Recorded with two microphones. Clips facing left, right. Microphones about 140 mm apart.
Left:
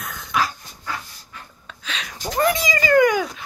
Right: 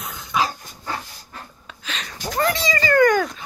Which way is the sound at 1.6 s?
Centre (ahead or behind).